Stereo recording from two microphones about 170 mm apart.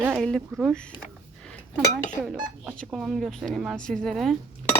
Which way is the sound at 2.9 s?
Centre (ahead or behind).